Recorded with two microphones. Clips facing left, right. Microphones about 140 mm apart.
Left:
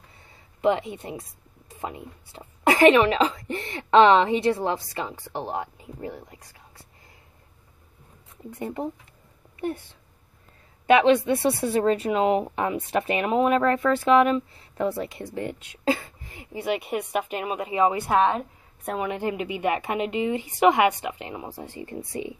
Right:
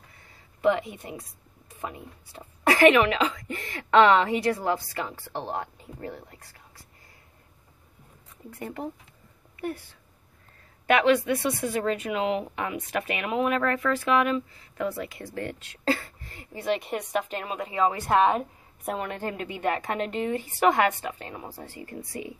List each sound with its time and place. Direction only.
0.6 s speech: 25° left (ahead or behind)
8.5 s speech: 20° left (ahead or behind)
18.1 s a woman's voice: 5° right (ahead or behind)
18.9 s a woman's voice: 10° left (ahead or behind)